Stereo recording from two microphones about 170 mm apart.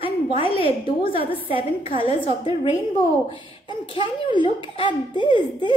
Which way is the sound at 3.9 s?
30° left (ahead or behind).